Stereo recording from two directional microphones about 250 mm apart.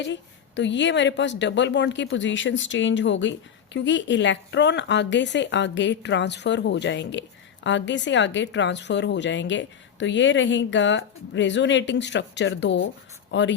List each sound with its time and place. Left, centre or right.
0.0 s speech: left